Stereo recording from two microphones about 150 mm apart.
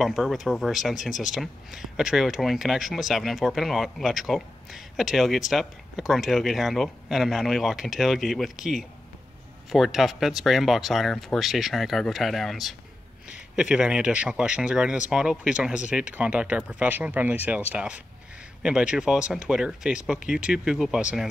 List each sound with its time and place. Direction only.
0.0 s speech: centre (ahead or behind)